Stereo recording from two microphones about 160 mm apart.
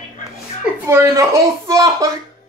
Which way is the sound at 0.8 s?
15° right (ahead or behind).